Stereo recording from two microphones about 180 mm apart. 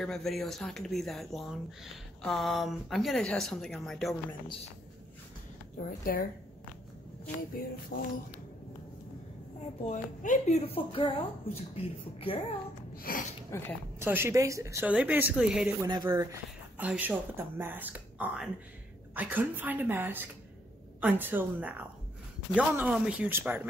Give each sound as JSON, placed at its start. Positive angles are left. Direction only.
{"t": 0.0, "sound": "speech", "side_deg": 0}
{"t": 5.9, "sound": "a woman's voice", "side_deg": 50}
{"t": 7.9, "sound": "a sound", "side_deg": 90}
{"t": 9.8, "sound": "a woman's voice", "side_deg": 45}
{"t": 12.9, "sound": "speech", "side_deg": 50}
{"t": 13.5, "sound": "a woman's voice", "side_deg": 15}
{"t": 13.9, "sound": "speech", "side_deg": -15}
{"t": 15.8, "sound": "speech", "side_deg": -20}